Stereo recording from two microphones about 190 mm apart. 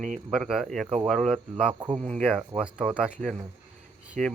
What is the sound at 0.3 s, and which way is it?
Speech, 5° right (ahead or behind).